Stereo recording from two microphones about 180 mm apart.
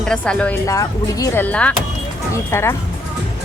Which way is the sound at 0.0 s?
5° left (ahead or behind).